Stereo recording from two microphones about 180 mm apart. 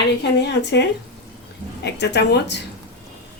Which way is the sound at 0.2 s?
70° left (ahead or behind).